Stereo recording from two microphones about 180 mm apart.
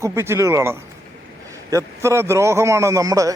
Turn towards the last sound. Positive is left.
turn(degrees=-20)  # may be behind; listen again after turning